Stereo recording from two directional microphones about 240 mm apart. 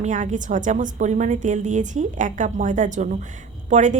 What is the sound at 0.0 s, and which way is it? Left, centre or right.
A woman's voice, right.